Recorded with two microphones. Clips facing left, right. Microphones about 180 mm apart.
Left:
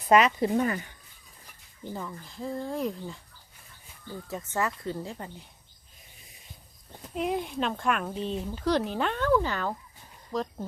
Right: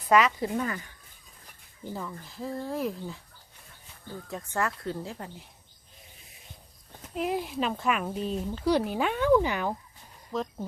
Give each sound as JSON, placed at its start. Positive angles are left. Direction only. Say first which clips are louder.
{"t": 0.1, "sound": "speech", "louder": "left 2 dB", "side_deg": 25}
{"t": 1.8, "sound": "speech", "louder": "even", "side_deg": 0}
{"t": 4.3, "sound": "speech", "louder": "even", "side_deg": 0}
{"t": 7.1, "sound": "speech", "louder": "even", "side_deg": 0}
{"t": 10.3, "sound": "speech", "louder": "left 1 dB", "side_deg": 0}